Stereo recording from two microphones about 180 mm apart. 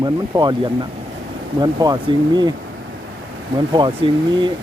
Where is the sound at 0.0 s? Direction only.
20° right (ahead or behind).